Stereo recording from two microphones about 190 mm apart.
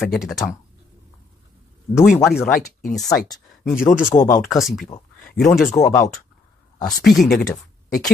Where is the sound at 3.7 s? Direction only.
45° left (ahead or behind).